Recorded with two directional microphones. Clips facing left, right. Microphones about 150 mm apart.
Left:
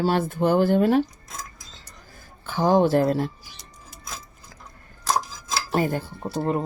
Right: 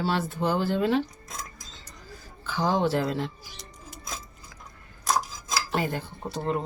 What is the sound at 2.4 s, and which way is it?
Speech, 50° left (ahead or behind).